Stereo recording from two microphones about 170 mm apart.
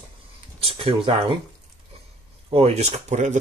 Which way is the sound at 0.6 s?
30° right (ahead or behind).